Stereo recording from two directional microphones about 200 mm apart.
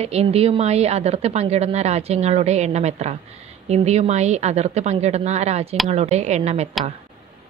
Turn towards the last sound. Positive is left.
turn(degrees=-35)  # may be behind; listen again after turning